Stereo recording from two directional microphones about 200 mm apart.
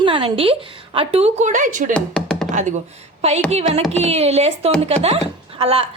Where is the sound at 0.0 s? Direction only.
25° right (ahead or behind).